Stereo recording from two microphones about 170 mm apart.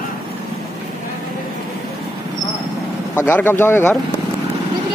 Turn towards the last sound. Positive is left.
turn(degrees=15)  # may be behind; listen again after turning